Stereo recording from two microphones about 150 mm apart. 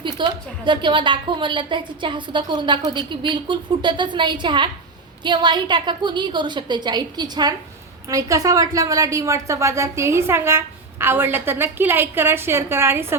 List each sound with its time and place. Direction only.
0.0 s a woman's voice: 30° right (ahead or behind); by 13.1 s 15° right (ahead or behind)